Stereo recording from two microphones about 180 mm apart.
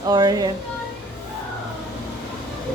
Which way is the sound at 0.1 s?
20° right (ahead or behind).